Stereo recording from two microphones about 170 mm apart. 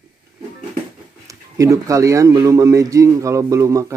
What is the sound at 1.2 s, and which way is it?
Speech, 20° right (ahead or behind).